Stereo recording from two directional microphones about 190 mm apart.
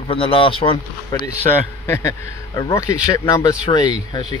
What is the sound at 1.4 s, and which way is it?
A man's voice, 15° left (ahead or behind).